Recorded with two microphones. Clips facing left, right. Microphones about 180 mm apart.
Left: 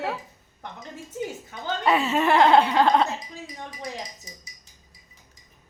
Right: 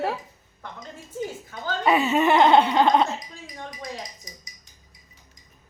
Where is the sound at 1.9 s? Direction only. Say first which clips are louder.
Right 2 dB; 5° right (ahead or behind).